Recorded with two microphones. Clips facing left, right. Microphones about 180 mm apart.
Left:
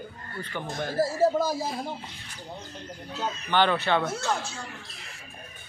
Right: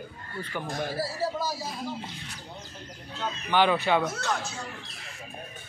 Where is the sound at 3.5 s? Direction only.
5° right (ahead or behind).